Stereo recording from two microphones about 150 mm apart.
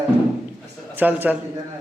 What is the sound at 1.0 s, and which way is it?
Speech, 10° right (ahead or behind).